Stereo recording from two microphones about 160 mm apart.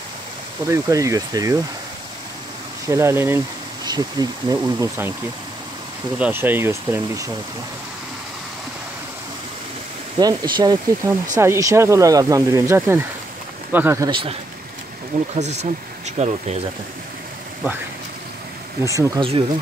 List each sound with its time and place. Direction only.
0.7 s speech: 20° right (ahead or behind)
2.9 s speech: 15° right (ahead or behind)
6.1 s speech: 10° right (ahead or behind)
10.1 s speech: 30° right (ahead or behind)
15.3 s speech: 45° right (ahead or behind)
18.8 s speech: 20° right (ahead or behind)